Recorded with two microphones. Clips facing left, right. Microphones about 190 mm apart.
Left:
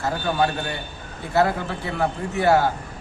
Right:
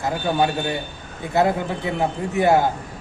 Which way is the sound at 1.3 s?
15° right (ahead or behind).